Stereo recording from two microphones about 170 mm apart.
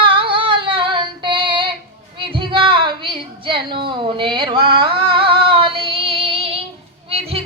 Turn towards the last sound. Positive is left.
turn(degrees=-35)  # may be behind; listen again after turning